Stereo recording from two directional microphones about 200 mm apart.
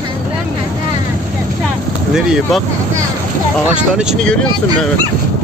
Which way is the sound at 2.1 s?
5° right (ahead or behind).